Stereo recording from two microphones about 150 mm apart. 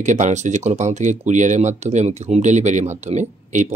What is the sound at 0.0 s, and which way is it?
Speech, 55° right (ahead or behind).